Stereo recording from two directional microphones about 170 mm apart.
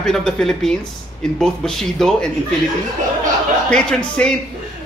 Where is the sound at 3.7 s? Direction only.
5° left (ahead or behind).